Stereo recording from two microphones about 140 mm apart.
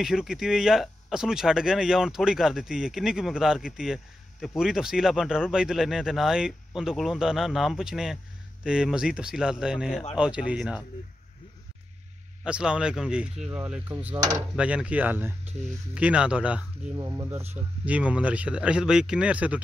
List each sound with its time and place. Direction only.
0.0 s speech: 5° right (ahead or behind)
12.4 s speech: 5° right (ahead or behind)
16.9 s speech: 25° right (ahead or behind)
17.8 s speech: 10° right (ahead or behind)